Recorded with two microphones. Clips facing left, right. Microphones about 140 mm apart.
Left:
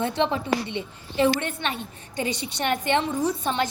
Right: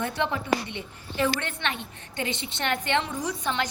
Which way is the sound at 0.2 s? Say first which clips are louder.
Left 1 dB; 25° left (ahead or behind).